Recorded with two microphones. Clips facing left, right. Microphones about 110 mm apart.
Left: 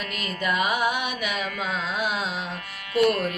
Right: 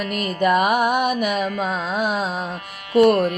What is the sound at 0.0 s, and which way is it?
Music, 50° right (ahead or behind).